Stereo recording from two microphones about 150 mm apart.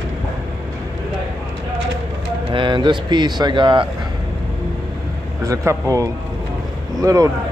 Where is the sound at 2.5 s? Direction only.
30° right (ahead or behind).